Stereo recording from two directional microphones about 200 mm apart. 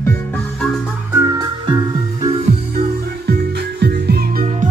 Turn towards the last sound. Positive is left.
turn(degrees=-50)  # may be behind; listen again after turning